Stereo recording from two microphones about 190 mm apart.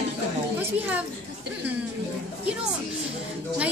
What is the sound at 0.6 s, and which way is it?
Speech, 10° right (ahead or behind).